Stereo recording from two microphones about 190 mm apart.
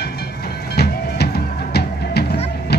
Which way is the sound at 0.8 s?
55° left (ahead or behind).